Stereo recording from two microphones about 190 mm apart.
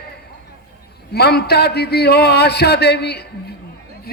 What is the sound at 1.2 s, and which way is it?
A man's voice, 55° left (ahead or behind).